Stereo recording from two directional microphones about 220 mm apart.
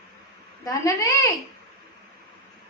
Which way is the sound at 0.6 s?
15° left (ahead or behind).